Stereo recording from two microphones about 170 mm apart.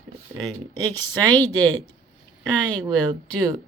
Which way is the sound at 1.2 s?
10° left (ahead or behind).